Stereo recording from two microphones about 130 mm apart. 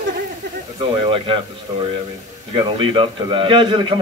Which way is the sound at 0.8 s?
45° right (ahead or behind).